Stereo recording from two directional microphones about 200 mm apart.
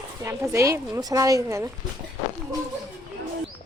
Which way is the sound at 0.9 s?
20° right (ahead or behind).